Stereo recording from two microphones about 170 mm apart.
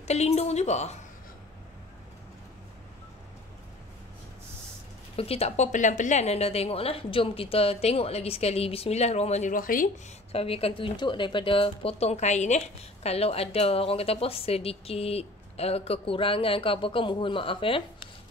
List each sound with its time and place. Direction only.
0.0 s speech: 40° left (ahead or behind)
5.1 s speech: 35° left (ahead or behind); by 9.8 s 55° left (ahead or behind)
10.3 s speech: 35° left (ahead or behind)